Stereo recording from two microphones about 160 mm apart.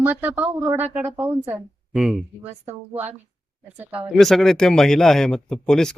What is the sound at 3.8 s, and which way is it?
Speech, 10° right (ahead or behind).